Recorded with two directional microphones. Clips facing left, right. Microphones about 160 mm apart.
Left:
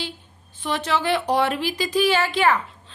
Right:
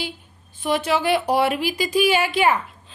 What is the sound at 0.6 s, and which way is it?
A woman's voice, 10° right (ahead or behind).